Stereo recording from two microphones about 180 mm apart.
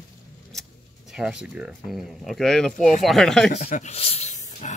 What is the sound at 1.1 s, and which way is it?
Speech, 5° right (ahead or behind).